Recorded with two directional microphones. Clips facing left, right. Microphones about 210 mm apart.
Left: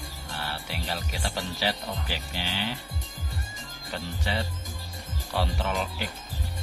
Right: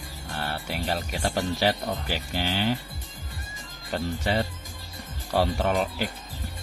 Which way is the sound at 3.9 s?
45° right (ahead or behind).